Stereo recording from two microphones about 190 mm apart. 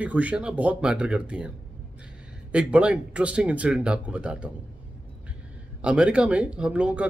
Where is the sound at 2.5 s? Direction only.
5° right (ahead or behind).